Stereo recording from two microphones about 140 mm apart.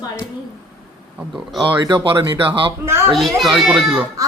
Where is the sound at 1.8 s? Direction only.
30° right (ahead or behind).